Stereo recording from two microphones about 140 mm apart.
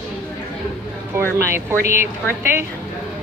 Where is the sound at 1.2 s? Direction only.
15° right (ahead or behind).